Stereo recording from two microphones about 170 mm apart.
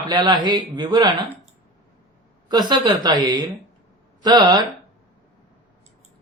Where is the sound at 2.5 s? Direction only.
25° right (ahead or behind).